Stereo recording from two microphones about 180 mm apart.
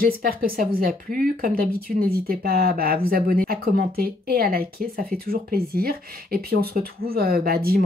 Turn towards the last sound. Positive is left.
turn(degrees=-55)  # may be behind; listen again after turning